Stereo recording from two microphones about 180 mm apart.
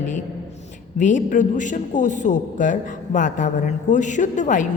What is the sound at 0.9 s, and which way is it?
A man's voice, 45° left (ahead or behind).